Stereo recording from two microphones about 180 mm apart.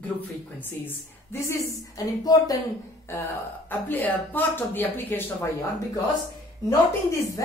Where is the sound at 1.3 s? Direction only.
15° left (ahead or behind).